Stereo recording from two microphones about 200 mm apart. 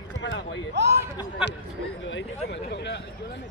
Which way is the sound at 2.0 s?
65° left (ahead or behind).